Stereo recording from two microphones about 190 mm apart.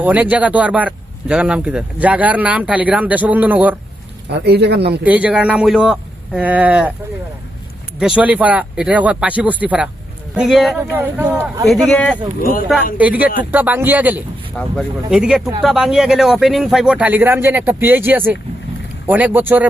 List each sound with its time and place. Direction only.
0.0 s speech: 10° right (ahead or behind)
4.3 s a man's voice: 60° right (ahead or behind)
5.0 s speech: 5° right (ahead or behind)
7.9 s a man's voice: 5° right (ahead or behind)
11.9 s a man's voice: 5° left (ahead or behind)
12.4 s speech: 50° left (ahead or behind)
12.6 s a man's voice: 5° right (ahead or behind)